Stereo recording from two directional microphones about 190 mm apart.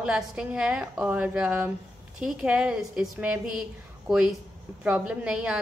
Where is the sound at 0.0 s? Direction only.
5° right (ahead or behind).